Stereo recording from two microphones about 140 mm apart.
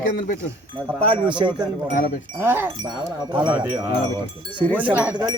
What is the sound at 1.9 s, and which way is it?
Sheep, 90° left.